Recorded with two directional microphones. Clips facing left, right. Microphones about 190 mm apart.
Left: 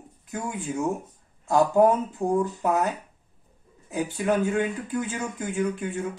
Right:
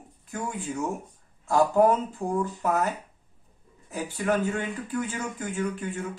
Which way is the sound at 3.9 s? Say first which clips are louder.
Left 2 dB; 15° left (ahead or behind).